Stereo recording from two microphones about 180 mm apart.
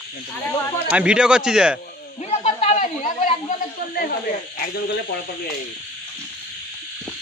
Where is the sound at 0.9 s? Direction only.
5° right (ahead or behind).